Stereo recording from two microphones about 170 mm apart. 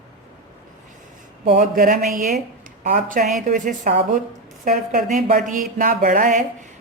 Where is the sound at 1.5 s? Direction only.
55° right (ahead or behind).